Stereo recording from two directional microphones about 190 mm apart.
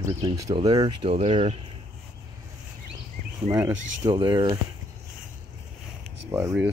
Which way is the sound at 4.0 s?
20° right (ahead or behind).